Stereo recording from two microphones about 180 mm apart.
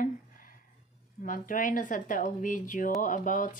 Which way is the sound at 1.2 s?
50° left (ahead or behind).